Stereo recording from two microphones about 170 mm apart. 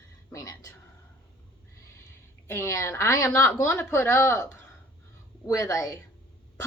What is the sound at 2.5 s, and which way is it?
A woman's voice, 15° left (ahead or behind).